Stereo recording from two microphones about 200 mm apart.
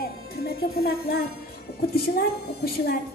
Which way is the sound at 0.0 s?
50° left (ahead or behind).